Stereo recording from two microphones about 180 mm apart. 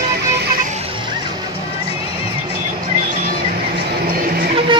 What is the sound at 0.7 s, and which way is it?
Music, 35° right (ahead or behind).